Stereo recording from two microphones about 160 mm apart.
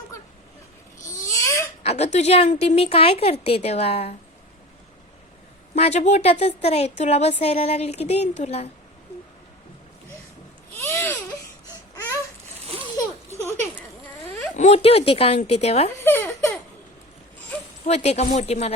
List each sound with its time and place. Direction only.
1.2 s babbling: 20° left (ahead or behind)
1.8 s a woman's voice: 40° left (ahead or behind)
5.7 s a woman's voice: 45° left (ahead or behind)
10.8 s baby cry: 15° left (ahead or behind)
14.5 s a woman's voice: 45° left (ahead or behind)
16.0 s giggle: 15° left (ahead or behind)
17.8 s speech: 40° left (ahead or behind)